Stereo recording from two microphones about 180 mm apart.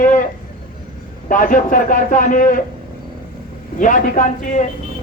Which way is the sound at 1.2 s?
50° left (ahead or behind).